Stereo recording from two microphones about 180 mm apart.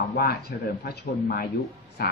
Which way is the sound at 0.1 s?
70° left (ahead or behind).